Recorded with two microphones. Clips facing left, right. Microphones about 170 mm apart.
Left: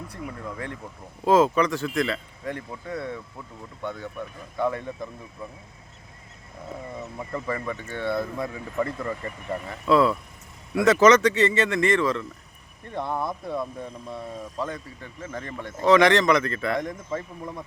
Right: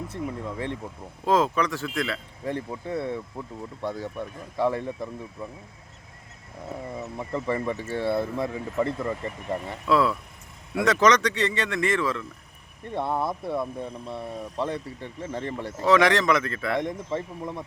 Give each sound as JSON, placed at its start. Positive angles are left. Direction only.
{"t": 0.1, "sound": "speech", "side_deg": -25}
{"t": 1.2, "sound": "speech", "side_deg": 5}
{"t": 2.4, "sound": "speech", "side_deg": -30}
{"t": 7.3, "sound": "speech", "side_deg": -25}
{"t": 9.8, "sound": "speech", "side_deg": 0}
{"t": 14.6, "sound": "speech", "side_deg": -30}
{"t": 15.8, "sound": "speech", "side_deg": 0}
{"t": 16.8, "sound": "speech", "side_deg": -25}